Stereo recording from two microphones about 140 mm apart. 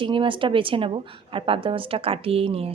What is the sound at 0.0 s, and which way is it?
A woman's voice, 35° right (ahead or behind).